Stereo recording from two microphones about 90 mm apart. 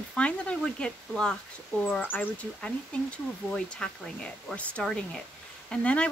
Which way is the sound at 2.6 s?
10° left (ahead or behind).